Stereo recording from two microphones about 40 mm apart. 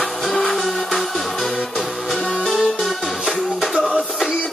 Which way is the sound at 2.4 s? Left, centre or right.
Centre.